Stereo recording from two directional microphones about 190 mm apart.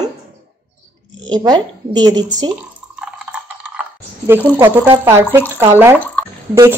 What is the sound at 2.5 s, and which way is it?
Drip, 5° right (ahead or behind).